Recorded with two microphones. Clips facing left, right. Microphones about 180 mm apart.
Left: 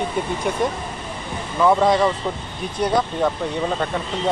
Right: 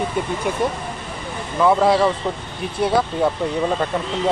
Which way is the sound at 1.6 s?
5° right (ahead or behind).